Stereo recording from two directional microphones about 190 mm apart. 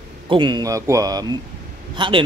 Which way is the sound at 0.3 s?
25° right (ahead or behind).